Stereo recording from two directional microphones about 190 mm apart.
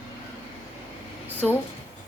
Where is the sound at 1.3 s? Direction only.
10° left (ahead or behind).